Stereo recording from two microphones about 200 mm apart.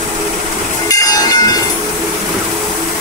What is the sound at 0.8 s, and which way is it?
Train, 15° left (ahead or behind).